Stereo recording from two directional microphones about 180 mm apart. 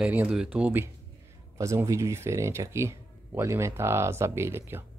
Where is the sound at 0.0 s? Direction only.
5° right (ahead or behind).